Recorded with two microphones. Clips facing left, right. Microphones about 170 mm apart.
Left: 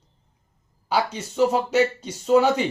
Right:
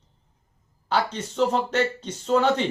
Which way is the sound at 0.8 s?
10° left (ahead or behind).